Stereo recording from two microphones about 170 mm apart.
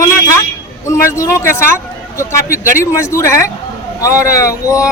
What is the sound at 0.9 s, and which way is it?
A man's voice, 15° left (ahead or behind).